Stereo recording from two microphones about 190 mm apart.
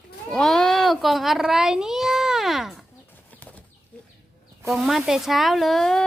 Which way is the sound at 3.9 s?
5° left (ahead or behind).